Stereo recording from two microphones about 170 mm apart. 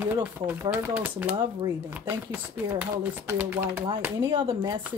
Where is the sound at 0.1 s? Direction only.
10° right (ahead or behind).